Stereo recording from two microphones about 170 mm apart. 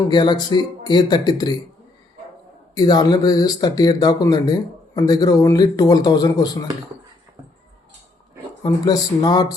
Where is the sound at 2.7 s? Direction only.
25° left (ahead or behind).